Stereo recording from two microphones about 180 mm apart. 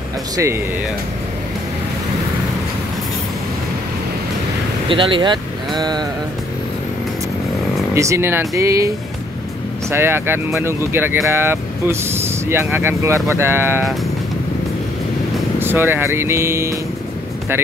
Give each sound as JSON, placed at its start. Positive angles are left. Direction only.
{"t": 4.8, "sound": "speech", "side_deg": -30}
{"t": 7.9, "sound": "speech", "side_deg": -15}
{"t": 15.6, "sound": "speech", "side_deg": -10}